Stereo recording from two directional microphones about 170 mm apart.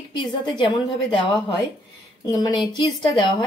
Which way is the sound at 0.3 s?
25° left (ahead or behind).